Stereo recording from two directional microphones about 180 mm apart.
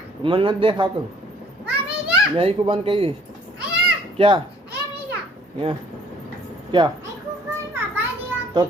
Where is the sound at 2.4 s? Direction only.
30° right (ahead or behind).